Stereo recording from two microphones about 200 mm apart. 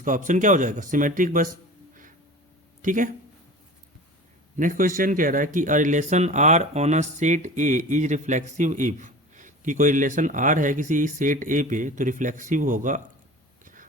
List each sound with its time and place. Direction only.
0.0 s speech: 40° right (ahead or behind)
2.8 s speech: 40° right (ahead or behind)
4.5 s speech: 40° right (ahead or behind)